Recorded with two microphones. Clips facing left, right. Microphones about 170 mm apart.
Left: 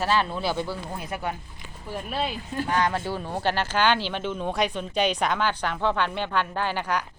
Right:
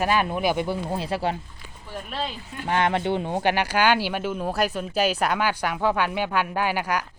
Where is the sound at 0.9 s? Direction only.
30° right (ahead or behind).